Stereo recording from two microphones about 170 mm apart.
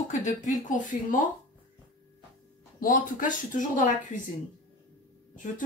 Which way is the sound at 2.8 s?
50° left (ahead or behind).